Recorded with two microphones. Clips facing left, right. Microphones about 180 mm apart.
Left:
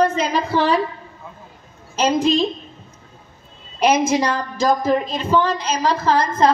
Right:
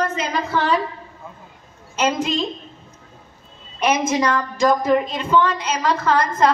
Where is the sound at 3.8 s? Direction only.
30° left (ahead or behind).